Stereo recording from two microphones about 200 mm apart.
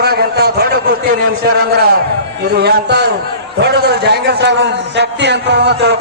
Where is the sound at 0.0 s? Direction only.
55° right (ahead or behind).